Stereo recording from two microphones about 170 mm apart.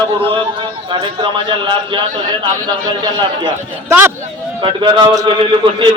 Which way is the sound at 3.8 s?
15° right (ahead or behind).